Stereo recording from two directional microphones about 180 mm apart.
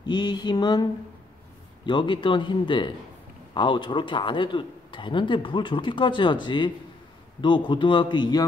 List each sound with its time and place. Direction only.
0.0 s a man's voice: 25° left (ahead or behind)
1.9 s a man's voice: 25° left (ahead or behind)